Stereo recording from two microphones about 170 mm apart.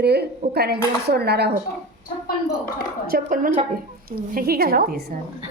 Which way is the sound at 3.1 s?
55° right (ahead or behind).